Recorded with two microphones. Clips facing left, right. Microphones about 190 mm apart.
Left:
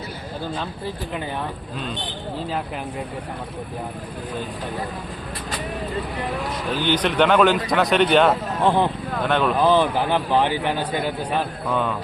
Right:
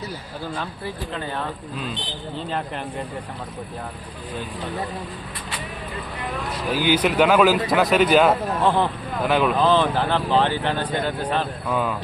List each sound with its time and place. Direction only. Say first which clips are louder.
6.7 s a man's voice: right 2 dB; 10° right (ahead or behind)
8.6 s speech: left 2 dB; 15° left (ahead or behind)
9.2 s speech: right 1 dB; 5° right (ahead or behind)
9.6 s speech: left 1 dB; 15° left (ahead or behind)
11.7 s speech: even; 5° right (ahead or behind)